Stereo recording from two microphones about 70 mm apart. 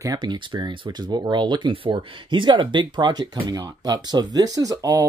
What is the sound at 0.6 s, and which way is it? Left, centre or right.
Speech, right.